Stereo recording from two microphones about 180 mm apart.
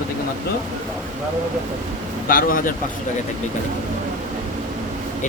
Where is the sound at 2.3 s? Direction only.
55° left (ahead or behind).